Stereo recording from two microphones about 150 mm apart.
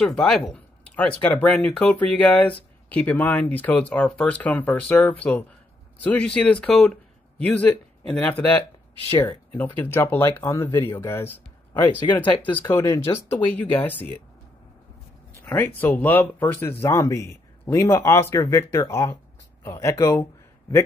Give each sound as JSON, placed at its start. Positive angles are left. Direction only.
{"t": 0.0, "sound": "speech", "side_deg": 5}
{"t": 9.8, "sound": "speech", "side_deg": 15}
{"t": 15.4, "sound": "speech", "side_deg": 15}